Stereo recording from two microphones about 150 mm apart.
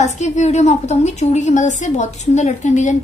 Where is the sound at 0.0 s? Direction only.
50° left (ahead or behind).